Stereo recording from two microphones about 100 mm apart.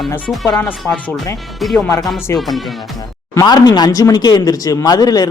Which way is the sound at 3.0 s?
35° left (ahead or behind).